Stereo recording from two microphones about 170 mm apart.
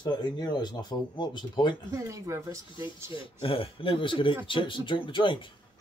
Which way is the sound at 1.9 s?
20° right (ahead or behind).